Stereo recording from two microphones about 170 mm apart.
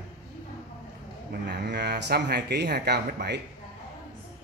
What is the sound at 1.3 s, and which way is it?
Speech, 75° right (ahead or behind).